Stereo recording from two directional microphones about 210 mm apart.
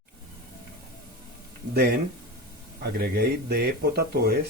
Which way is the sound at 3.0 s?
50° right (ahead or behind).